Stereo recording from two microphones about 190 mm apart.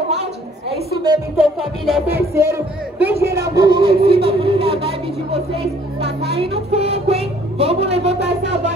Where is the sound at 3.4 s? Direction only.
20° right (ahead or behind).